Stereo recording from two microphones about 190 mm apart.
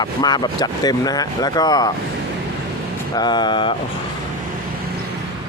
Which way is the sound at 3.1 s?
25° left (ahead or behind).